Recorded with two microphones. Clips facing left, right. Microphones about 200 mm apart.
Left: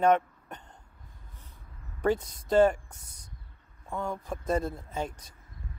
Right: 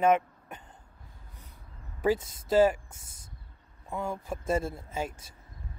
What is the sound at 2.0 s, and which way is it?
Speech, 5° right (ahead or behind).